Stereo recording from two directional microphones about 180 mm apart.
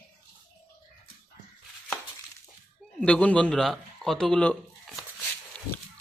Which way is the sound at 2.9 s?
5° left (ahead or behind).